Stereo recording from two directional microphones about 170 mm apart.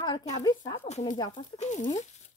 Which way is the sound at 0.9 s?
40° left (ahead or behind).